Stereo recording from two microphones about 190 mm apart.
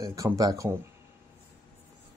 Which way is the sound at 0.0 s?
15° right (ahead or behind).